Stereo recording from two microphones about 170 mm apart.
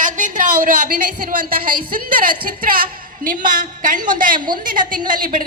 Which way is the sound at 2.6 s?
55° right (ahead or behind).